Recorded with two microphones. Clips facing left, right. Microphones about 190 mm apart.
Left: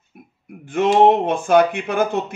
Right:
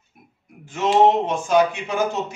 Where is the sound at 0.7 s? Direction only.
55° left (ahead or behind).